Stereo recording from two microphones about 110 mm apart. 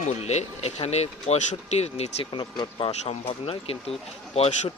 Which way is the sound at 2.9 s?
70° left (ahead or behind).